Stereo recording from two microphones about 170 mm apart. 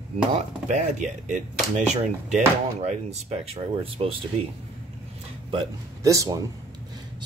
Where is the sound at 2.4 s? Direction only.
40° right (ahead or behind).